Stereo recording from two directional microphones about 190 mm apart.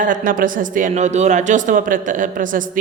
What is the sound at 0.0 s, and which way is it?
Speech, 45° right (ahead or behind).